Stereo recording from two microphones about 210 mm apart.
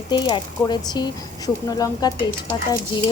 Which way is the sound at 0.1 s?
20° left (ahead or behind).